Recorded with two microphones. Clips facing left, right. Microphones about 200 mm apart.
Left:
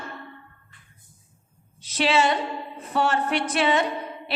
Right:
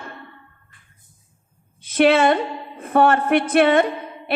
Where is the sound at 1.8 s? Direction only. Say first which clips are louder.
Right 7 dB; 55° right (ahead or behind).